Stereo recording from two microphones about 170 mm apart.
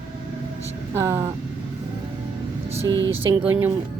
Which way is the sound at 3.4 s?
10° right (ahead or behind).